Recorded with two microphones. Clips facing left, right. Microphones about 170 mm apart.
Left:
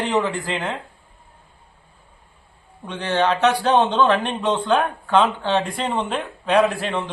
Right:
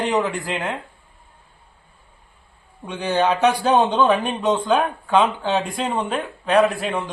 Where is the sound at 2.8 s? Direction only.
10° right (ahead or behind).